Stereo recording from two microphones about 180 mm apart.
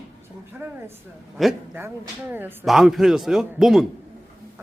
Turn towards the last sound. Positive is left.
turn(degrees=0)  # may be behind; listen again after turning